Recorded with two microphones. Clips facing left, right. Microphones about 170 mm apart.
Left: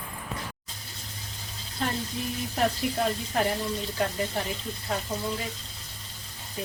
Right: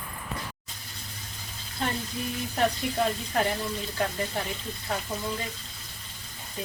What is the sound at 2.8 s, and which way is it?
Speech, centre (ahead or behind).